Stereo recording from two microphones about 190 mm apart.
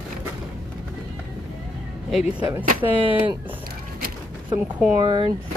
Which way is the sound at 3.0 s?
25° right (ahead or behind).